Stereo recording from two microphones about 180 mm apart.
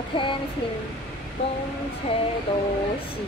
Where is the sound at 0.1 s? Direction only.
25° left (ahead or behind).